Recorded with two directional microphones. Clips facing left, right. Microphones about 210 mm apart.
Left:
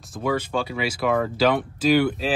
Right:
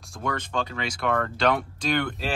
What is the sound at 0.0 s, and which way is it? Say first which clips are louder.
Speech: left 6 dB; 5° left (ahead or behind).